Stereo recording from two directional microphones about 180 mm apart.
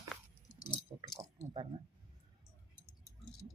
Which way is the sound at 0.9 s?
15° right (ahead or behind).